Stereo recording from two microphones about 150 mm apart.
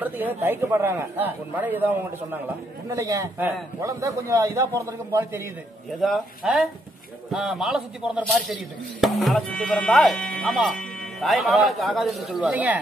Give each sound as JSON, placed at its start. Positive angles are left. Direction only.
{"t": 0.0, "sound": "a man's voice", "side_deg": -10}
{"t": 3.0, "sound": "a man's voice", "side_deg": -20}
{"t": 5.9, "sound": "speech", "side_deg": 0}